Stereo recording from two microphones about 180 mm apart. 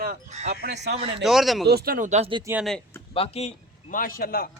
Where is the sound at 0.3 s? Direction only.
40° right (ahead or behind).